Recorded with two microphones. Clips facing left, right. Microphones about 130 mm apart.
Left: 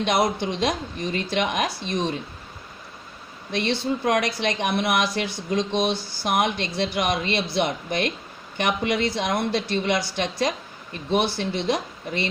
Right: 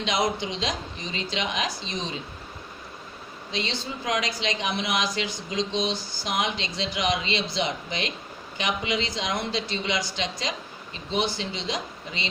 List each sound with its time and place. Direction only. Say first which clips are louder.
0.0 s speech: left 4 dB; 55° left (ahead or behind)
3.5 s speech: left 7 dB; 60° left (ahead or behind)